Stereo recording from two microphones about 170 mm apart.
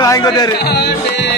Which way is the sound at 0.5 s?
70° left (ahead or behind).